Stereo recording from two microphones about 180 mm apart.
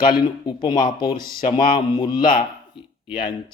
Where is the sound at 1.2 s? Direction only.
55° left (ahead or behind).